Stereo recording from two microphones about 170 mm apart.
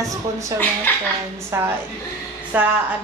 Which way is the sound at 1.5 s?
15° right (ahead or behind).